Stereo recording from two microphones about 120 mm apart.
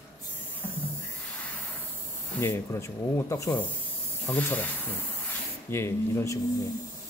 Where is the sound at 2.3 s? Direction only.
20° left (ahead or behind).